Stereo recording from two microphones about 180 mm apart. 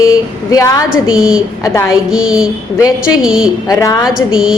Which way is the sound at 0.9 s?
5° right (ahead or behind).